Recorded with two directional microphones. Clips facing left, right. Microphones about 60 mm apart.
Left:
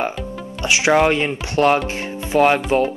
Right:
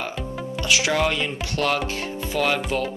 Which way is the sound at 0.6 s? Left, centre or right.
Left.